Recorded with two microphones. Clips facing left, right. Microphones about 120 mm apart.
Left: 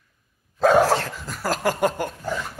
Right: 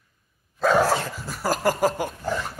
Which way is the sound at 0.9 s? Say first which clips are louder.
Left 2 dB; 10° right (ahead or behind).